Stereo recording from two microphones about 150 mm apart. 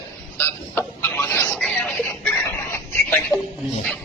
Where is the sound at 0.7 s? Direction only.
10° left (ahead or behind).